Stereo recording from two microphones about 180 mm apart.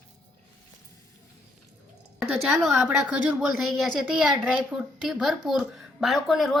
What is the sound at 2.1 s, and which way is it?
Speech, 5° right (ahead or behind).